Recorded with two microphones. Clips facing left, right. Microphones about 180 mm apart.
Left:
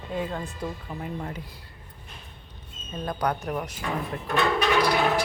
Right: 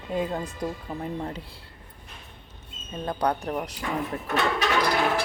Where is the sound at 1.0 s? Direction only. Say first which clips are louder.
Right 1 dB; 30° right (ahead or behind).